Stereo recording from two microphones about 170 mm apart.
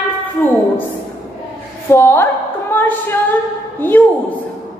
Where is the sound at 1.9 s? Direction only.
15° left (ahead or behind).